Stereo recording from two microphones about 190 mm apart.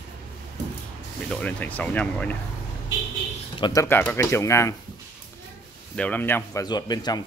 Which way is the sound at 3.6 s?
25° left (ahead or behind).